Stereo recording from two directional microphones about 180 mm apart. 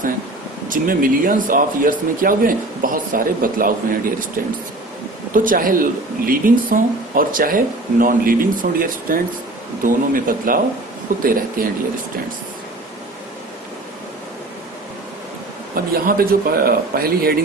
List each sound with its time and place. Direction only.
0.7 s speech: 50° right (ahead or behind)
15.7 s a man's voice: 55° right (ahead or behind)